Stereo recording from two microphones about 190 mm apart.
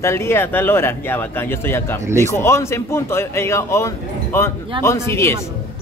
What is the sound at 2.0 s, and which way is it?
Speech, 15° right (ahead or behind).